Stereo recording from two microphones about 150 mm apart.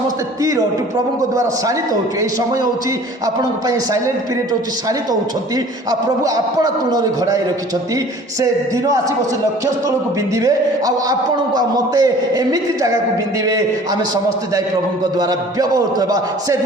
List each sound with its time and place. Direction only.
0.4 s a man's voice: 20° right (ahead or behind)
3.2 s a man's voice: 20° right (ahead or behind)
5.5 s a man's voice: 25° right (ahead or behind)
10.3 s a man's voice: 25° right (ahead or behind)
15.1 s a man's voice: 25° right (ahead or behind)